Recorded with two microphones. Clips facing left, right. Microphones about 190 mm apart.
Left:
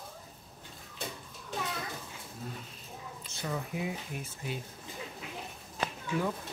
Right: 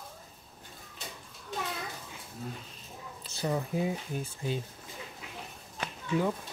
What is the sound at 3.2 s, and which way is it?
Speech, 35° right (ahead or behind).